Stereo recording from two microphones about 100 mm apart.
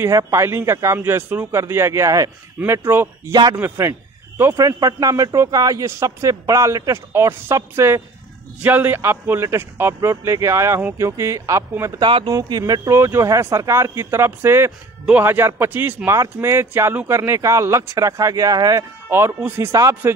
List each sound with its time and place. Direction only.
0.0 s a man's voice: 30° right (ahead or behind)
4.6 s a man's voice: 40° right (ahead or behind)
12.0 s speech: 55° right (ahead or behind)
12.4 s a man's voice: 40° right (ahead or behind)
12.9 s a man's voice: 25° right (ahead or behind)
19.0 s a man's voice: 25° right (ahead or behind)